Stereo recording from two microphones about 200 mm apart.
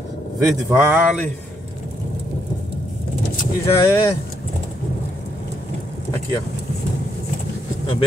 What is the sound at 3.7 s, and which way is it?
Speech, 15° left (ahead or behind).